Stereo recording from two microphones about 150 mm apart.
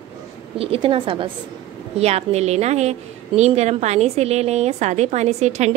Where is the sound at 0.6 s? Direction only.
40° right (ahead or behind).